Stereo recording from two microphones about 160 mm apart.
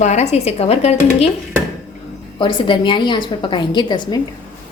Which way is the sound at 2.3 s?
30° left (ahead or behind).